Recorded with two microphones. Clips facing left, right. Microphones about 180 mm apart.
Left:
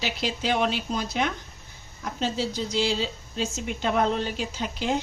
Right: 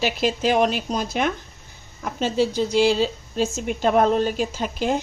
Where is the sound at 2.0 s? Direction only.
60° right (ahead or behind).